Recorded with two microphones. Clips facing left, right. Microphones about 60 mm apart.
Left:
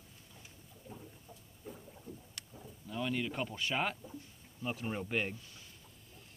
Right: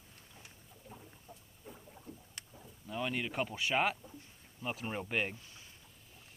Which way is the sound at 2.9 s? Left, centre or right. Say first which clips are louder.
Even; centre.